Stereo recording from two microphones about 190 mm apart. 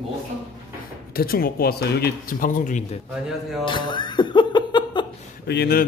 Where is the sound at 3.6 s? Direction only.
25° left (ahead or behind).